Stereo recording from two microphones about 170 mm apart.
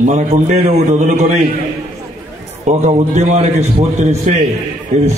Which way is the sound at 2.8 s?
45° right (ahead or behind).